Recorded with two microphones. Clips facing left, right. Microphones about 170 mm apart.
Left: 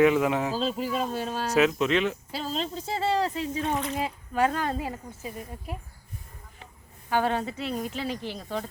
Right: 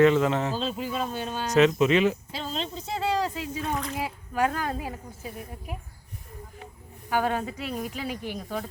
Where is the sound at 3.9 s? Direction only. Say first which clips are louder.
Left 1 dB; 5° right (ahead or behind).